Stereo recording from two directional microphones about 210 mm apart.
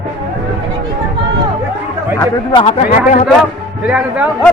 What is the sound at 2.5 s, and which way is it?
Speech, 25° left (ahead or behind).